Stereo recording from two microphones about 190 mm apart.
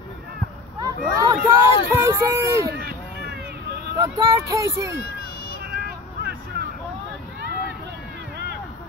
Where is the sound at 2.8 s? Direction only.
55° right (ahead or behind).